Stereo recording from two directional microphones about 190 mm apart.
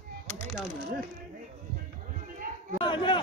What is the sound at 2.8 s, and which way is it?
Speech, 25° left (ahead or behind).